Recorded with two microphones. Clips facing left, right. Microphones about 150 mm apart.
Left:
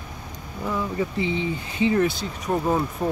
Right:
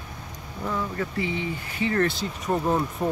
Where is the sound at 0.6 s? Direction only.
10° left (ahead or behind).